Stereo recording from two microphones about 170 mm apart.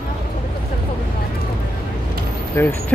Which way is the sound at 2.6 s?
15° left (ahead or behind).